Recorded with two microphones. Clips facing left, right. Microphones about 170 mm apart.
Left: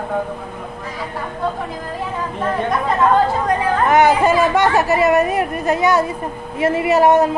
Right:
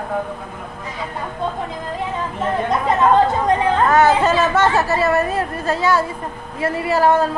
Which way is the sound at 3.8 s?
15° left (ahead or behind).